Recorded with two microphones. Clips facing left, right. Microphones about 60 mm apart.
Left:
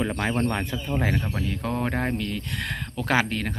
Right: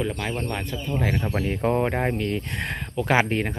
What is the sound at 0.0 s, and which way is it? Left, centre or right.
Speech, centre.